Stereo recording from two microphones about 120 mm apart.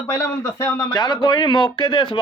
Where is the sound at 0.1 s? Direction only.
20° left (ahead or behind).